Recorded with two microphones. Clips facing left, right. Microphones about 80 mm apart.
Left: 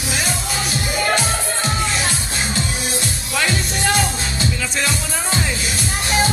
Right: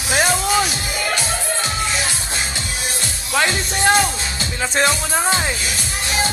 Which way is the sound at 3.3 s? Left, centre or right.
Right.